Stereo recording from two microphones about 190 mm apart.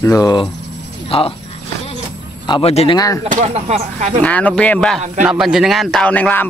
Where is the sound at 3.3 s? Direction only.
35° right (ahead or behind).